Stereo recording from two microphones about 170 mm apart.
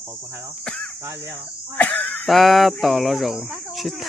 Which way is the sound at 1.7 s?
10° left (ahead or behind).